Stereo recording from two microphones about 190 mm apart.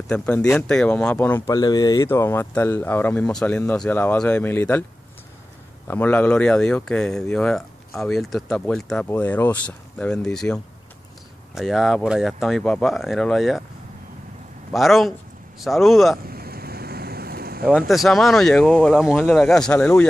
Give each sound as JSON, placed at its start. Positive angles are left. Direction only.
{"t": 0.1, "sound": "speech", "side_deg": 5}
{"t": 1.5, "sound": "speech", "side_deg": 20}
{"t": 5.9, "sound": "speech", "side_deg": 10}
{"t": 14.7, "sound": "speech", "side_deg": 0}
{"t": 16.2, "sound": "a sound", "side_deg": -55}
{"t": 17.6, "sound": "speech", "side_deg": 0}